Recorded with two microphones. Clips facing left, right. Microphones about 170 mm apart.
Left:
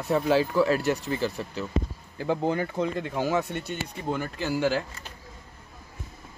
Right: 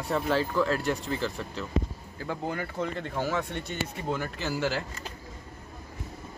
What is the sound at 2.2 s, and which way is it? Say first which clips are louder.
Speech: left 7 dB; 25° left (ahead or behind).